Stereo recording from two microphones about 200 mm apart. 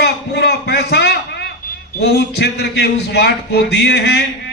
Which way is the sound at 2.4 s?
55° left (ahead or behind).